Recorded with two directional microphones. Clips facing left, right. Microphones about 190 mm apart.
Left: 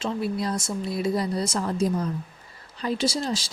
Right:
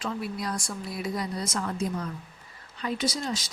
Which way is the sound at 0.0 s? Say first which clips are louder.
Left 5 dB; 25° left (ahead or behind).